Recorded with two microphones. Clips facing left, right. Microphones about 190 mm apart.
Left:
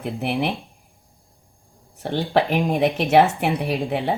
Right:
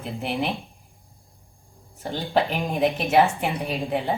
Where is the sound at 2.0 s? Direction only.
70° left (ahead or behind).